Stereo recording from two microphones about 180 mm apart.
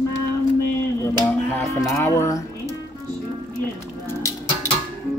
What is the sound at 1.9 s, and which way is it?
Speech, 15° left (ahead or behind).